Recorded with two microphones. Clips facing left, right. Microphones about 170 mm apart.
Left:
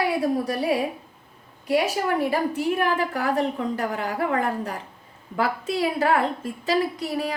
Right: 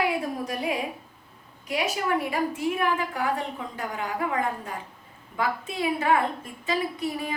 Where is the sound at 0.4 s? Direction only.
35° left (ahead or behind).